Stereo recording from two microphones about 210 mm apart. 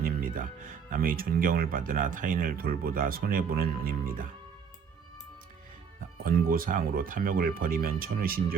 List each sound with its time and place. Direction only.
0.0 s speech: 40° right (ahead or behind)
6.2 s speech: 45° right (ahead or behind)